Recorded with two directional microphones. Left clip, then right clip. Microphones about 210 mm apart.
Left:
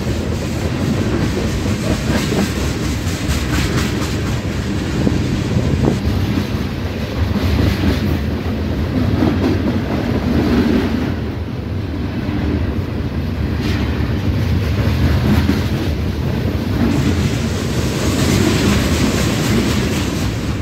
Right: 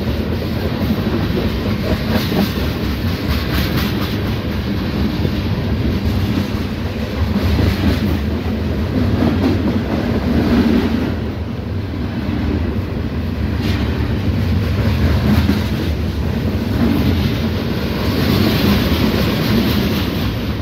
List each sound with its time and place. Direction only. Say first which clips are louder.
10.5 s vehicle: right 1 dB; 45° right (ahead or behind)